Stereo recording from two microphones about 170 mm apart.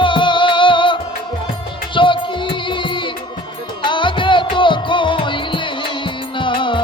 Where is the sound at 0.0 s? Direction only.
30° left (ahead or behind).